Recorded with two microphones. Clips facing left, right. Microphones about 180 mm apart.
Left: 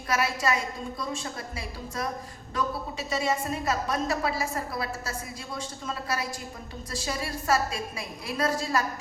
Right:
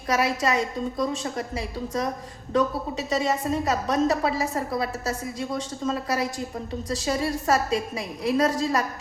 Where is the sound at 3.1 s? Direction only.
35° right (ahead or behind).